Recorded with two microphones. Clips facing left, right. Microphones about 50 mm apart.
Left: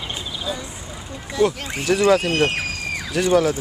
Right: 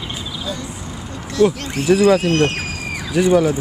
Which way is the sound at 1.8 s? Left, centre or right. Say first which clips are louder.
Right 3 dB; centre.